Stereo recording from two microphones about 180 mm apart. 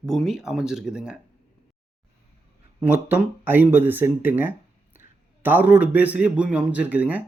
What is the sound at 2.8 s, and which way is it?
Speech, 10° right (ahead or behind).